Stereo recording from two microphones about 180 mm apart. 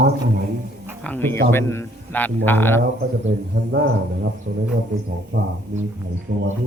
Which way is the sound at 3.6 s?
55° right (ahead or behind).